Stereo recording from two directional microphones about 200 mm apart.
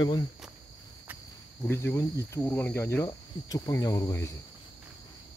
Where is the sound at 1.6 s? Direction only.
10° left (ahead or behind).